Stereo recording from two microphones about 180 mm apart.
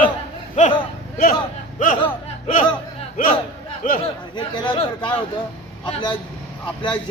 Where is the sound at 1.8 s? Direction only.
50° left (ahead or behind).